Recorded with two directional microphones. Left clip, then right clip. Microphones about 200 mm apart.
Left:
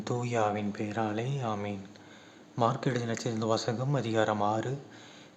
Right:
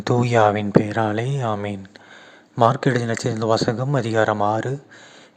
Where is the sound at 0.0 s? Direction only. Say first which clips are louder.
Right 13 dB; 45° right (ahead or behind).